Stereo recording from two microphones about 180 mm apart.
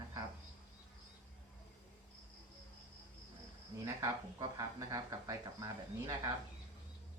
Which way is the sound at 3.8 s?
20° right (ahead or behind).